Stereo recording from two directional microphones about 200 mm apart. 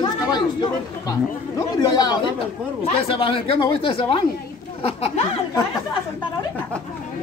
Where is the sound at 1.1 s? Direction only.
20° left (ahead or behind).